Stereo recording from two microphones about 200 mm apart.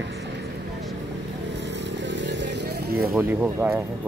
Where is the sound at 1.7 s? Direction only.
60° right (ahead or behind).